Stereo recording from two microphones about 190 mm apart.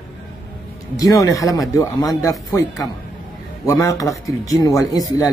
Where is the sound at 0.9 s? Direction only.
20° left (ahead or behind).